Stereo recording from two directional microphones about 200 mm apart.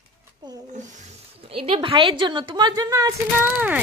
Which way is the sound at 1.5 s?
30° right (ahead or behind).